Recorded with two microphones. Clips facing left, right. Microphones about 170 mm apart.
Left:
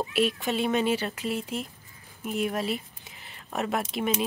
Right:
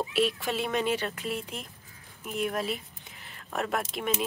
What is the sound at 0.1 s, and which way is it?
Speech, centre (ahead or behind).